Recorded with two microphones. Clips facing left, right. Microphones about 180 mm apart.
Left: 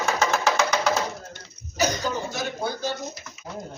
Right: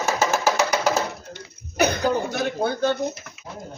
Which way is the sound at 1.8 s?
60° right (ahead or behind).